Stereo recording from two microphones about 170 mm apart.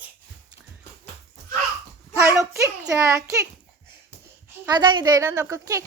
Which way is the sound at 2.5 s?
20° right (ahead or behind).